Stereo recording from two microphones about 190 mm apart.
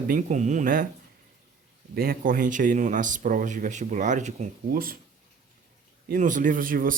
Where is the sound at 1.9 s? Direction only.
50° right (ahead or behind).